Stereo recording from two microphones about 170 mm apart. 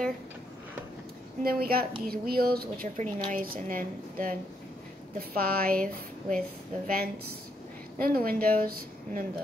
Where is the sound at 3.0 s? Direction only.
50° right (ahead or behind).